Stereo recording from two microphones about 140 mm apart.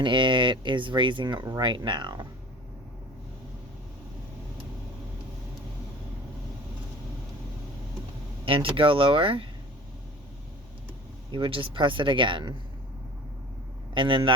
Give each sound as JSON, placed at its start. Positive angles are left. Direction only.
{"t": 0.0, "sound": "speech", "side_deg": -35}
{"t": 8.4, "sound": "speech", "side_deg": -40}
{"t": 11.3, "sound": "speech", "side_deg": -40}
{"t": 13.9, "sound": "speech", "side_deg": -35}